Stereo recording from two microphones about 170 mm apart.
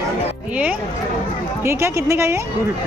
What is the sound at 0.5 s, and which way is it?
Speech, 10° right (ahead or behind).